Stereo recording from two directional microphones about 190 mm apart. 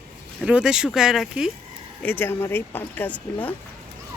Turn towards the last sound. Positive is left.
turn(degrees=10)  # may be behind; listen again after turning